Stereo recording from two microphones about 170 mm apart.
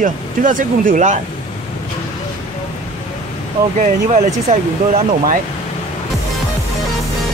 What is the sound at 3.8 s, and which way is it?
Speech, 45° right (ahead or behind).